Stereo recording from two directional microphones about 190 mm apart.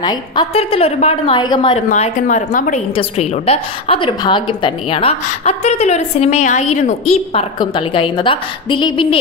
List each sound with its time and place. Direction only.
0.0 s a woman's voice: 20° left (ahead or behind)
1.9 s a woman's voice: 40° left (ahead or behind)
7.6 s a woman's voice: 25° left (ahead or behind)